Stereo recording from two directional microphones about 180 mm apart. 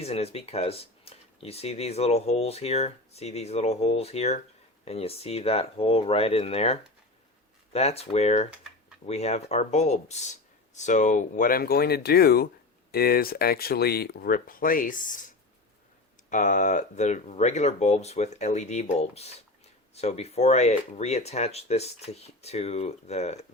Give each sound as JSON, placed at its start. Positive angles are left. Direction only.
{"t": 0.0, "sound": "speech", "side_deg": 35}
{"t": 16.3, "sound": "speech", "side_deg": 45}